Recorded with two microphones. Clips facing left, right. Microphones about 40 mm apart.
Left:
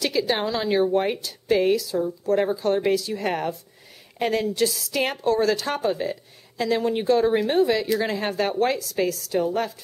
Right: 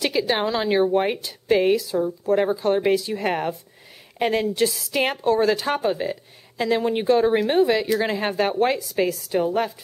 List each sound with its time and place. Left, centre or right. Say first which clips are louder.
0.0 s a woman's voice: right 1 dB; right